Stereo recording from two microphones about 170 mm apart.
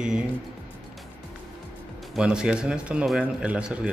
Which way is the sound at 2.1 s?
5° right (ahead or behind).